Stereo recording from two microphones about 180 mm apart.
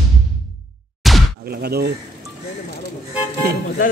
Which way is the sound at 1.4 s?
60° right (ahead or behind).